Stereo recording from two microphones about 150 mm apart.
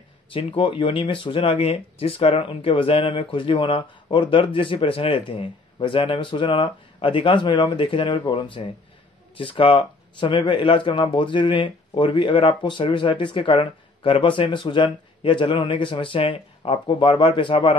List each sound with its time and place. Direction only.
0.3 s speech: 40° left (ahead or behind)